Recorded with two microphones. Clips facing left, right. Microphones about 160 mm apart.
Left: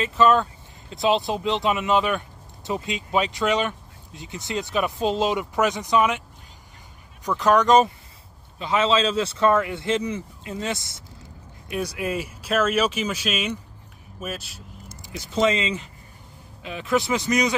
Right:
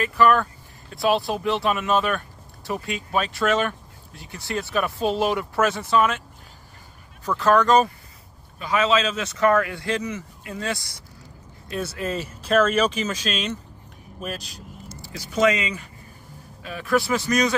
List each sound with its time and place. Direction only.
0.0 s speech: 20° left (ahead or behind)
7.2 s speech: 15° left (ahead or behind)
15.0 s speech: 20° left (ahead or behind)